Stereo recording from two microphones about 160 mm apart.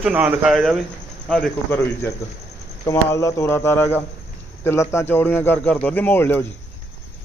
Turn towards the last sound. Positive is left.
turn(degrees=15)  # may be behind; listen again after turning